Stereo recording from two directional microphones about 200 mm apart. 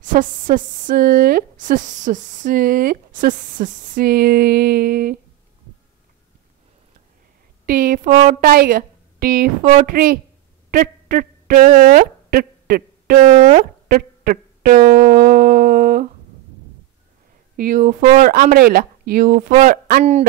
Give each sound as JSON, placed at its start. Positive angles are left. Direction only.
{"t": 0.0, "sound": "speech", "side_deg": -40}
{"t": 7.6, "sound": "speech", "side_deg": -45}
{"t": 10.7, "sound": "a sound", "side_deg": -45}
{"t": 13.2, "sound": "speech", "side_deg": -35}
{"t": 17.6, "sound": "speech", "side_deg": -45}